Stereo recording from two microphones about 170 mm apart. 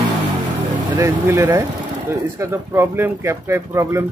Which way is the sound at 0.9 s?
15° right (ahead or behind).